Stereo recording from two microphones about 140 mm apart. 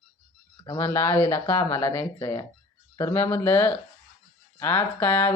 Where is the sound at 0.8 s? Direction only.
20° left (ahead or behind).